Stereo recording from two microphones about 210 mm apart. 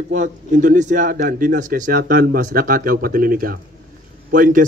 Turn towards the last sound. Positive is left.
turn(degrees=-40)  # may be behind; listen again after turning